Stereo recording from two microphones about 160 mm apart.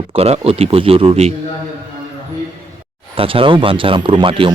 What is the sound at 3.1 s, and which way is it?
A man's voice, 35° right (ahead or behind).